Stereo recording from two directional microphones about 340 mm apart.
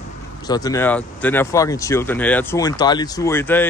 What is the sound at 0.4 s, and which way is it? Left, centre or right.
A man's voice, centre.